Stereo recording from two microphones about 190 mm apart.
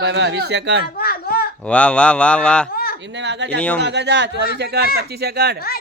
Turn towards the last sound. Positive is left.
turn(degrees=-55)  # may be behind; listen again after turning